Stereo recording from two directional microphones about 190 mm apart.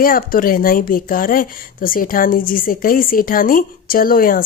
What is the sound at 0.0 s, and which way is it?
Speech, 50° left (ahead or behind).